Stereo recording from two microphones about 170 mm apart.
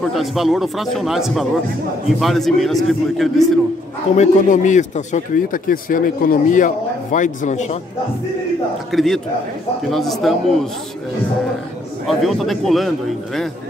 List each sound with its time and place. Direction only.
0.0 s a man's voice: centre (ahead or behind)
4.2 s a man's voice: 45° left (ahead or behind)
8.9 s a man's voice: centre (ahead or behind)
12.1 s a man's voice: centre (ahead or behind)